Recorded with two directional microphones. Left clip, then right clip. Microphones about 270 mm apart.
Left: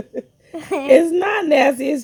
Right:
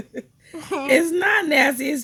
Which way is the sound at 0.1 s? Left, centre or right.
Centre.